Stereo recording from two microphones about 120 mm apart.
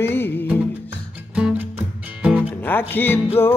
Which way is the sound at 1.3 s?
10° right (ahead or behind).